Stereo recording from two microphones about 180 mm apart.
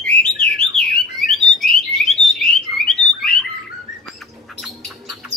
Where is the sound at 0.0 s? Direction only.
5° left (ahead or behind).